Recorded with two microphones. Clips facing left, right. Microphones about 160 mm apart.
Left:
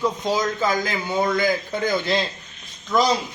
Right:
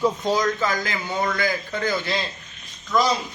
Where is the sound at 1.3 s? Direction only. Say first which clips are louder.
Left 3 dB; 15° left (ahead or behind).